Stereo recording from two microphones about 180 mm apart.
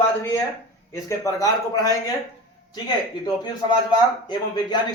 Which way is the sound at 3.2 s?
20° left (ahead or behind).